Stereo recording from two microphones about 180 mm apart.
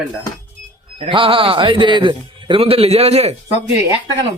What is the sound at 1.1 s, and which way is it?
A man's voice, 30° right (ahead or behind).